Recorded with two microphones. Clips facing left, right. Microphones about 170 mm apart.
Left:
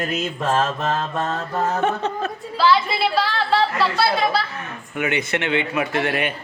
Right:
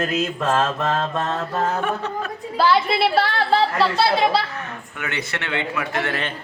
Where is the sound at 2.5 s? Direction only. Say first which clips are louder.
Right 1 dB; 55° right (ahead or behind).